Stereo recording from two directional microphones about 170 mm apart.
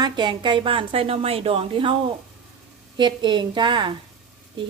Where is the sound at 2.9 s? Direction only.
25° right (ahead or behind).